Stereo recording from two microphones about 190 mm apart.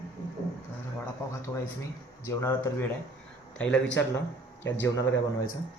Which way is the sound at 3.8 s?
75° left (ahead or behind).